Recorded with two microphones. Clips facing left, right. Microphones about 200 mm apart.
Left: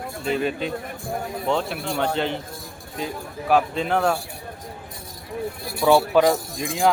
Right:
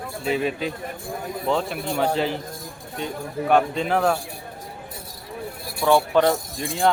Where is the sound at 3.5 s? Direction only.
Centre (ahead or behind).